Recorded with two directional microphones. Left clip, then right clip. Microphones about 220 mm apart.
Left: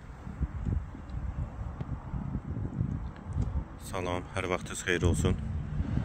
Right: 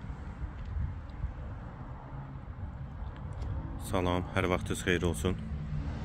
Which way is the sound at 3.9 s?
5° left (ahead or behind).